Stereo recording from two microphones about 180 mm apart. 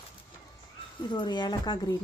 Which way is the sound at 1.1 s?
25° left (ahead or behind).